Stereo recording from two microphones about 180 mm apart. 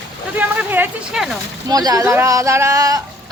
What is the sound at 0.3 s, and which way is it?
Speech, 10° right (ahead or behind).